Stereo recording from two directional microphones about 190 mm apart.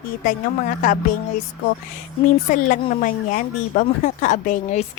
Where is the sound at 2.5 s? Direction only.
45° left (ahead or behind).